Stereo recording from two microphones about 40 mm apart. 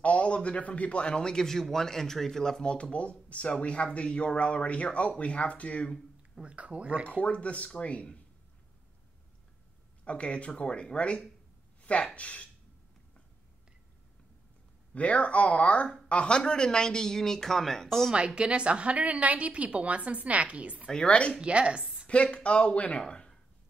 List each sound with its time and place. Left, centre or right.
0.0 s speech: left; by 2.6 s centre
2.6 s speech: left
6.4 s a woman's voice: right
7.2 s speech: left
10.0 s speech: left
15.0 s speech: left; by 18.1 s centre
18.1 s a woman's voice: right
20.9 s speech: left
21.4 s a woman's voice: right
22.0 s speech: left